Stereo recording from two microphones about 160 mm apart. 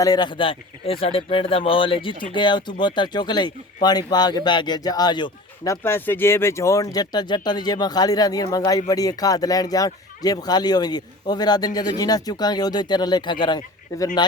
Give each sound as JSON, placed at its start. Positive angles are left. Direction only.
{"t": 0.0, "sound": "a man's voice", "side_deg": 25}